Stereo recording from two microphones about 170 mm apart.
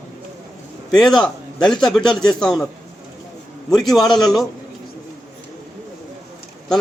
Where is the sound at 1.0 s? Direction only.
Centre (ahead or behind).